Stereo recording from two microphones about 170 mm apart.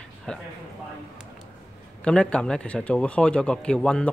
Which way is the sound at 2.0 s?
5° left (ahead or behind).